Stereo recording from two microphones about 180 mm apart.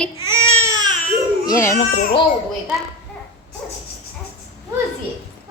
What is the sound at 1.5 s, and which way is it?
Speech, 15° left (ahead or behind).